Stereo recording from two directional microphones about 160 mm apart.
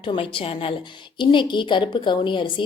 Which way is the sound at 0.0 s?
30° left (ahead or behind).